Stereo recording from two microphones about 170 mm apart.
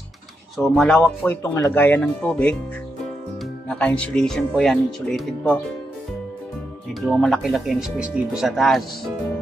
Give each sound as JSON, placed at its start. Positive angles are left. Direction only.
{"t": 0.6, "sound": "speech", "side_deg": 5}
{"t": 3.6, "sound": "speech", "side_deg": 10}
{"t": 6.9, "sound": "speech", "side_deg": 0}